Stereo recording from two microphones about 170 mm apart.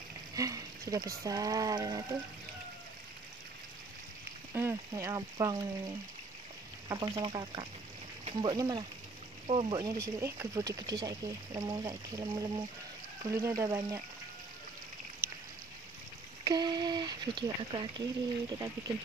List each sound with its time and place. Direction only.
0.4 s a sound: 20° right (ahead or behind)
1.2 s speech: 20° right (ahead or behind)
4.6 s speech: 15° right (ahead or behind); by 9.8 s 35° right (ahead or behind)
9.8 s speech: 20° right (ahead or behind)
16.4 s speech: 25° right (ahead or behind)